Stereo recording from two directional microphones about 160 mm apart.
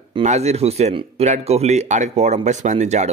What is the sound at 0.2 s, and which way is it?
A man's voice, 45° right (ahead or behind).